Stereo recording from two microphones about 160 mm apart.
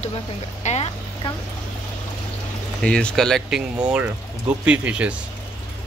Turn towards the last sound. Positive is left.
turn(degrees=-5)  # may be behind; listen again after turning